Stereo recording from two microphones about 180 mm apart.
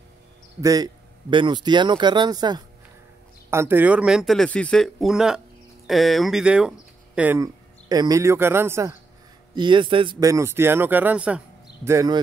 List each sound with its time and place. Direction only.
0.6 s speech: 20° right (ahead or behind)
9.6 s speech: 25° right (ahead or behind)